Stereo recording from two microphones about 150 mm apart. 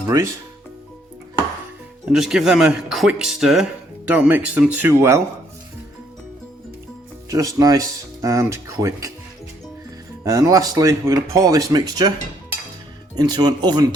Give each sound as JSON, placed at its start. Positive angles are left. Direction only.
{"t": 2.1, "sound": "speech", "side_deg": -5}
{"t": 7.3, "sound": "speech", "side_deg": -25}
{"t": 10.2, "sound": "speech", "side_deg": -20}
{"t": 13.1, "sound": "speech", "side_deg": -25}